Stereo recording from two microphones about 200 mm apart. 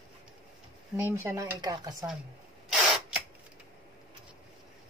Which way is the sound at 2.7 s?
Centre (ahead or behind).